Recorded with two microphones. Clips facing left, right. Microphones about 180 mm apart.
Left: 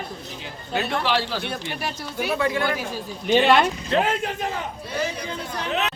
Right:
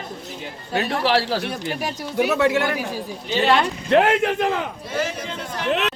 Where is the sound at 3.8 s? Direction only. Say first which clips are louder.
Right 6 dB; 65° right (ahead or behind).